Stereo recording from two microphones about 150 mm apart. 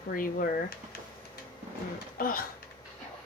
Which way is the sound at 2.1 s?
75° left (ahead or behind).